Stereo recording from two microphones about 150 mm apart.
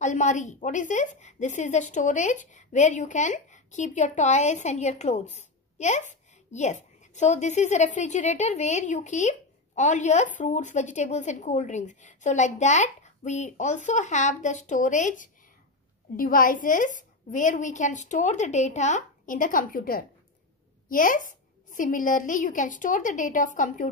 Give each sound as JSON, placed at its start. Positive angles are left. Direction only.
{"t": 0.0, "sound": "a woman's voice", "side_deg": 55}
{"t": 16.2, "sound": "a woman's voice", "side_deg": 65}